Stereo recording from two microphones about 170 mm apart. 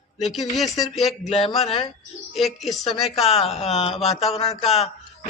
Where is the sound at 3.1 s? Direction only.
35° left (ahead or behind).